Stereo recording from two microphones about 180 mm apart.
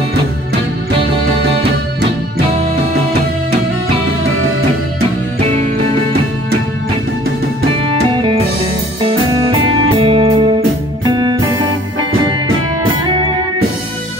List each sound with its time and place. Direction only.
8.1 s music: 25° right (ahead or behind)